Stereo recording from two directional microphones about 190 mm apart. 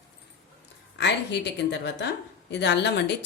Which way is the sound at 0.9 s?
65° left (ahead or behind).